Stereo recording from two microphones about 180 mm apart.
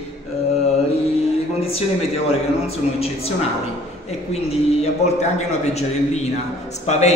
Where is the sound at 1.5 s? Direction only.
35° left (ahead or behind).